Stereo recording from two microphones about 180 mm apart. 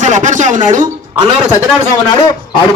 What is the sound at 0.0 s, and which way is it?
A man's voice, 45° right (ahead or behind).